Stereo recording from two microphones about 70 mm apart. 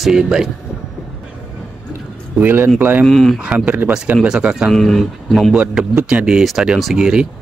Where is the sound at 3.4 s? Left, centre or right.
Centre.